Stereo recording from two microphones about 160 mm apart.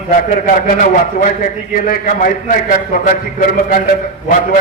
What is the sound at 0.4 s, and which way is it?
A man's voice, 60° left (ahead or behind).